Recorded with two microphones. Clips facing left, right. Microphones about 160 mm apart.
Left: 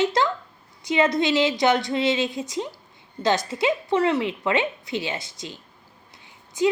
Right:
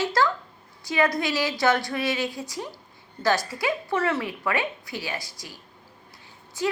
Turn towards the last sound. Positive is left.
turn(degrees=20)  # may be behind; listen again after turning